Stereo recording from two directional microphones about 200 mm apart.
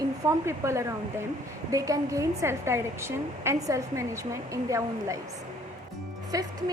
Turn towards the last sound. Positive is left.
turn(degrees=-20)  # may be behind; listen again after turning